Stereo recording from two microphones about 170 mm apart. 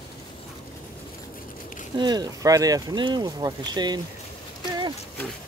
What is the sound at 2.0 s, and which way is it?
Speech, 25° right (ahead or behind).